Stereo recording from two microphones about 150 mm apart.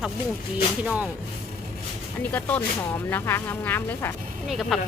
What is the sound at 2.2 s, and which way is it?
Speech, 10° left (ahead or behind).